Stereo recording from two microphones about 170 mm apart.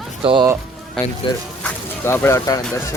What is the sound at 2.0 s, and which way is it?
Speech, 15° left (ahead or behind).